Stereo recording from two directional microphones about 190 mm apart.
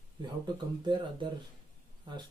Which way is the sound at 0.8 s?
25° right (ahead or behind).